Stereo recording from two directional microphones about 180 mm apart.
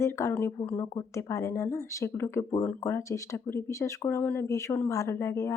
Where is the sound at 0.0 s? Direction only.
15° left (ahead or behind).